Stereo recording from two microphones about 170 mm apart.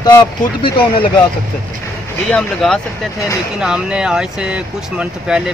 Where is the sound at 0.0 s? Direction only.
25° left (ahead or behind).